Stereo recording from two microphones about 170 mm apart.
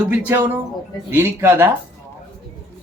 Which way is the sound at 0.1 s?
10° right (ahead or behind).